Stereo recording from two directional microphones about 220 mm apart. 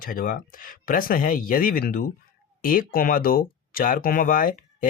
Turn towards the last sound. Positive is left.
turn(degrees=40)  # may be behind; listen again after turning